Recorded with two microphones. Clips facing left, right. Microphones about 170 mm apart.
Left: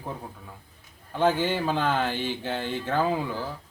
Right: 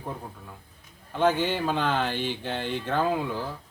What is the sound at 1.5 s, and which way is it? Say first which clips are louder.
Speech: left 1 dB; 5° left (ahead or behind).